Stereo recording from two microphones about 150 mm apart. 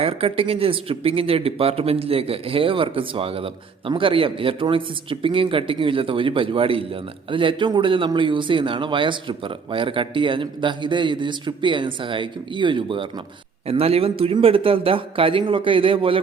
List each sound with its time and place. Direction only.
0.0 s speech: 40° right (ahead or behind)